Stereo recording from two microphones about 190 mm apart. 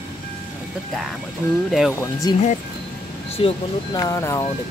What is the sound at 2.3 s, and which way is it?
Speech, 20° left (ahead or behind).